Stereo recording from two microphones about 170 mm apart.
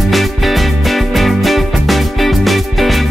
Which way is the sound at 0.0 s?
Centre (ahead or behind).